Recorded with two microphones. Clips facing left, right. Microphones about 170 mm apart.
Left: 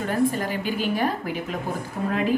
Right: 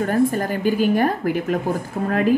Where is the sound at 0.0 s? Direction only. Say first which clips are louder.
Right 4 dB; 45° right (ahead or behind).